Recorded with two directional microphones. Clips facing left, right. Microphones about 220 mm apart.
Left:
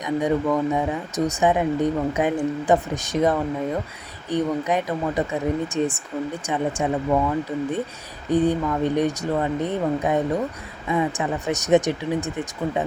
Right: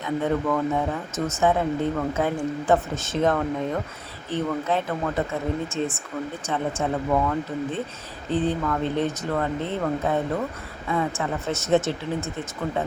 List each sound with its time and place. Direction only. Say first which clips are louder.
0.0 s speech: left 2 dB; 15° left (ahead or behind)